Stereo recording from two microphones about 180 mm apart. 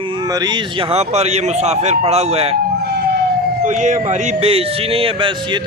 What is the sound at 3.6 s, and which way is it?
Speech, 40° right (ahead or behind).